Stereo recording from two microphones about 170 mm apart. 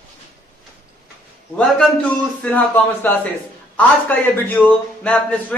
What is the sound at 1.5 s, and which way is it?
A man's voice, 5° left (ahead or behind).